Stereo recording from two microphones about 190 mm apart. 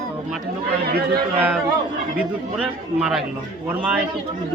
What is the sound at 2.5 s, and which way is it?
Speech, 5° right (ahead or behind).